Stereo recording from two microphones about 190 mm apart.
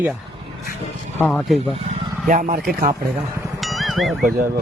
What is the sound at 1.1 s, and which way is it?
Speech, 5° left (ahead or behind).